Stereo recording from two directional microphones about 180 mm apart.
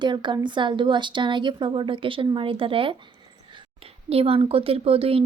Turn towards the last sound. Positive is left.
turn(degrees=-30)  # may be behind; listen again after turning